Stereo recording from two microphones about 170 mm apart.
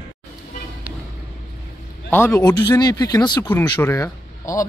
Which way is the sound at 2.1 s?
10° left (ahead or behind).